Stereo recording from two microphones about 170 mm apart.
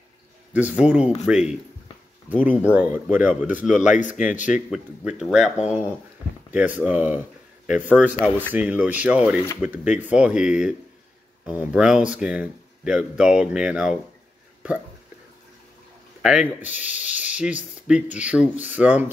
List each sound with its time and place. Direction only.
0.5 s speech: 10° right (ahead or behind)
3.7 s speech: 45° left (ahead or behind)
4.6 s speech: 5° right (ahead or behind)
16.2 s speech: 5° right (ahead or behind)